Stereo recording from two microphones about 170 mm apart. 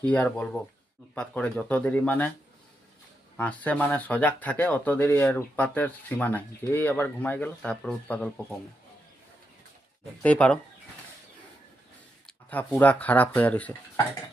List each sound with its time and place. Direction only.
0.0 s speech: 5° left (ahead or behind)
3.3 s speech: 10° left (ahead or behind)
10.2 s speech: 10° left (ahead or behind)
12.5 s speech: 10° left (ahead or behind)